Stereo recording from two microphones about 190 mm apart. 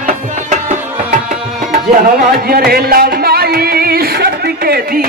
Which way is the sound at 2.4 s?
50° right (ahead or behind).